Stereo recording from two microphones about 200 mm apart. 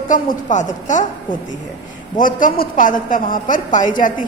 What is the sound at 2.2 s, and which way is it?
A woman's voice, 40° left (ahead or behind).